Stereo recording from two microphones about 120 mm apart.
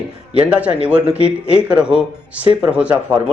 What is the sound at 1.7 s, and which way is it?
Speech, 10° right (ahead or behind).